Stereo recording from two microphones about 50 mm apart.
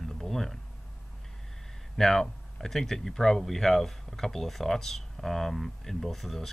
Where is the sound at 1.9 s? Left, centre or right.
Centre.